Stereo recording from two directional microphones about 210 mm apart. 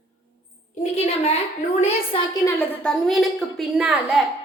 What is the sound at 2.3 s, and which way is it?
A woman's voice, 15° left (ahead or behind).